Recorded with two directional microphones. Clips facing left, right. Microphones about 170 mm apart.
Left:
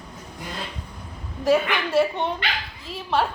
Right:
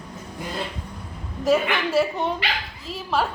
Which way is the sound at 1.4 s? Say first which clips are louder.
Even; 5° right (ahead or behind).